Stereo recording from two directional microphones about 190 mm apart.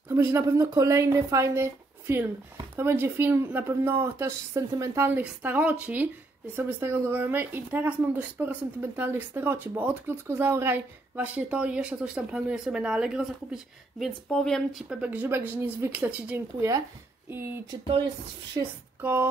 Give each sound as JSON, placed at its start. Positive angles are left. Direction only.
{"t": 0.1, "sound": "speech", "side_deg": -15}
{"t": 17.8, "sound": "a woman's voice", "side_deg": -25}
{"t": 18.9, "sound": "speech", "side_deg": -10}